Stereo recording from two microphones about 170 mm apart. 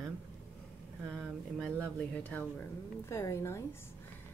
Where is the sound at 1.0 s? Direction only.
5° left (ahead or behind).